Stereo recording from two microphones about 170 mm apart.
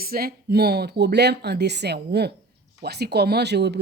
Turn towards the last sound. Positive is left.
turn(degrees=-80)